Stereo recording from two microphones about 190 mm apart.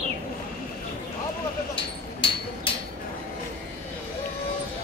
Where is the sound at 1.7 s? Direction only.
25° left (ahead or behind).